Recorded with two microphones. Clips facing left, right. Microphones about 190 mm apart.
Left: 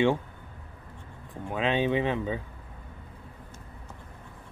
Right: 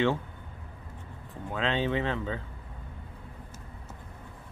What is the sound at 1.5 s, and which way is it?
Speech, 15° left (ahead or behind).